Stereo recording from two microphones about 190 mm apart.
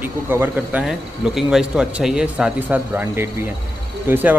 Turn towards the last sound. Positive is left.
turn(degrees=-10)  # may be behind; listen again after turning